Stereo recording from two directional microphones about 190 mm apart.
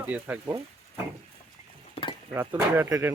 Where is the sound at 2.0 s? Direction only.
30° left (ahead or behind).